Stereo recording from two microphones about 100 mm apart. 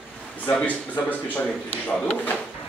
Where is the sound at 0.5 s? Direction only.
15° left (ahead or behind).